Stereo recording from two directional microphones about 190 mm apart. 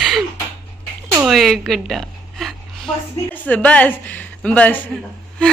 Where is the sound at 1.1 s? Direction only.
5° right (ahead or behind).